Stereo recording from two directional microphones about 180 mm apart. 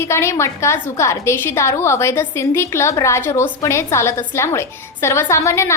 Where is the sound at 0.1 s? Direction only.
15° left (ahead or behind).